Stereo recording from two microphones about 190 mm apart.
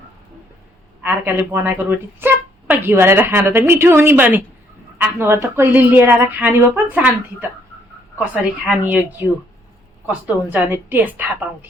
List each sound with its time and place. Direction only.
1.0 s a woman's voice: 10° right (ahead or behind)
8.2 s a woman's voice: 10° right (ahead or behind)